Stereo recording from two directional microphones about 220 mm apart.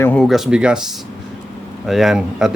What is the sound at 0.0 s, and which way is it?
Speech, 5° left (ahead or behind).